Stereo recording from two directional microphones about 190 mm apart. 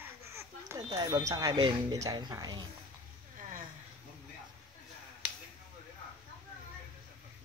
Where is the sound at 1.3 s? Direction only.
20° right (ahead or behind).